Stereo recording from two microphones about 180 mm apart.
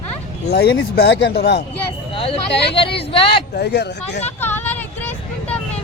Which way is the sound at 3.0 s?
30° left (ahead or behind).